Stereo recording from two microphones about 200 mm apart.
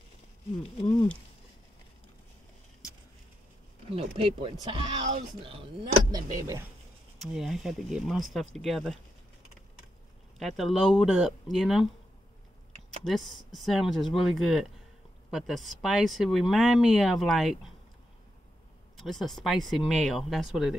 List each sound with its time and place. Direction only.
0.7 s speech: 25° left (ahead or behind)
3.9 s speech: 30° right (ahead or behind)
6.1 s speech: 15° right (ahead or behind)
7.2 s speech: centre (ahead or behind)
10.4 s speech: centre (ahead or behind)
13.0 s speech: centre (ahead or behind)
18.9 s speech: centre (ahead or behind)